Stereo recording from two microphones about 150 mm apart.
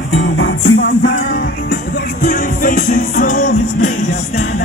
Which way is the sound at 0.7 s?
75° left (ahead or behind).